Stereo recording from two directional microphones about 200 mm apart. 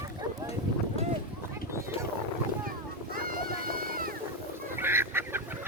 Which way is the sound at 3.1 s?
45° right (ahead or behind).